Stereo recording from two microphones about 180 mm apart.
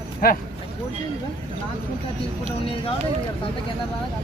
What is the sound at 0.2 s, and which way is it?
Speech, 55° left (ahead or behind).